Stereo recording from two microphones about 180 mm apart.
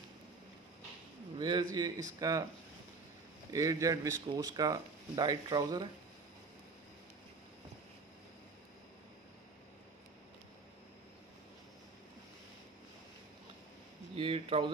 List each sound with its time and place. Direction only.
1.4 s speech: 25° right (ahead or behind)
3.5 s speech: 20° right (ahead or behind)
14.1 s speech: 30° right (ahead or behind)